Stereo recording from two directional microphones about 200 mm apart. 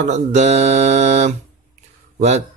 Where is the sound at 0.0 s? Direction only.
35° right (ahead or behind).